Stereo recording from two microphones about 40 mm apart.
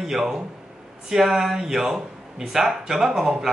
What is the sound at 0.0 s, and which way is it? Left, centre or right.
Speech, centre.